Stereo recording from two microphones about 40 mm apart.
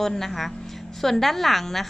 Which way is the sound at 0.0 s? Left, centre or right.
Centre.